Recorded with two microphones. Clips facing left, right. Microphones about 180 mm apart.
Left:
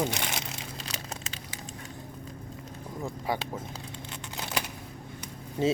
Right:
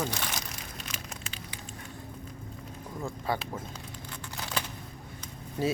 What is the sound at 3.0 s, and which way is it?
Speech, 15° left (ahead or behind).